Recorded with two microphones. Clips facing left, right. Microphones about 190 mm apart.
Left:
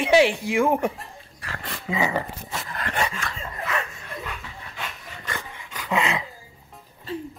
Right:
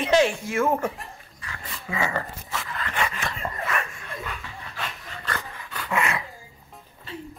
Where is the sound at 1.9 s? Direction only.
15° left (ahead or behind).